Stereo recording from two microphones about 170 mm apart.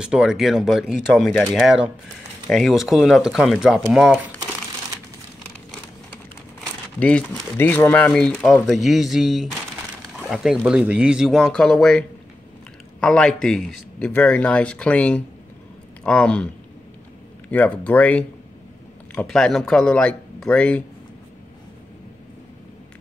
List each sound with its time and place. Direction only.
0.0 s speech: 5° right (ahead or behind)
7.0 s speech: 5° left (ahead or behind)
13.0 s speech: 5° left (ahead or behind)
17.5 s speech: 10° left (ahead or behind)